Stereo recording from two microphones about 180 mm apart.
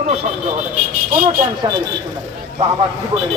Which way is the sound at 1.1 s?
50° right (ahead or behind).